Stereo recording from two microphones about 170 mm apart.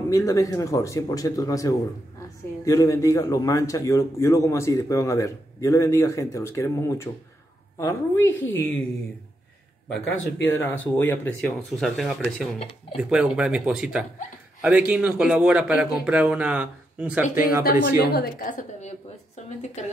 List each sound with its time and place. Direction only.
0.1 s a man's voice: 20° left (ahead or behind)
9.8 s a man's voice: 5° left (ahead or behind); by 17.6 s 10° right (ahead or behind)
17.6 s a woman's voice: 60° left (ahead or behind); by 19.9 s 40° left (ahead or behind)